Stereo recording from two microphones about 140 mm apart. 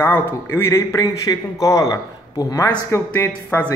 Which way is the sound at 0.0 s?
15° left (ahead or behind).